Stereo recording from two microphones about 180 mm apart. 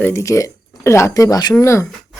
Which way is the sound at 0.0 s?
15° left (ahead or behind).